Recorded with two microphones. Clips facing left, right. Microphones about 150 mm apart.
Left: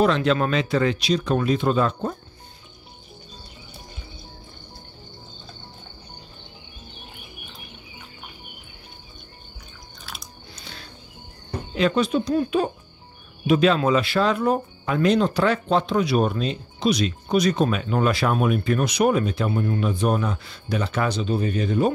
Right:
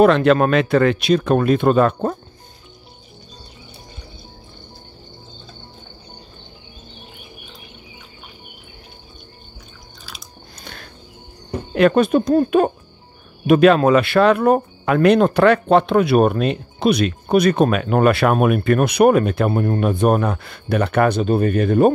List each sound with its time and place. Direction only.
0.0 s speech: 60° right (ahead or behind)
10.0 s biting: centre (ahead or behind)
10.6 s music: 55° right (ahead or behind)
11.7 s speech: 55° right (ahead or behind)